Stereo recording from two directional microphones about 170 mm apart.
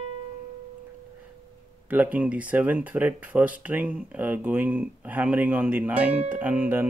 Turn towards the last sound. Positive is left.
turn(degrees=-10)  # may be behind; listen again after turning